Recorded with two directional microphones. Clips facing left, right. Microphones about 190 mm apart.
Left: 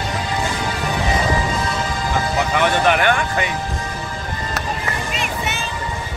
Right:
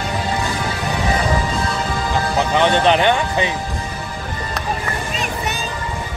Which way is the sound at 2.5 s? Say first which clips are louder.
Right 3 dB; 20° right (ahead or behind).